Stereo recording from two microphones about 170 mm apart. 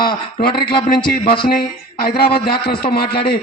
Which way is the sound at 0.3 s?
55° left (ahead or behind).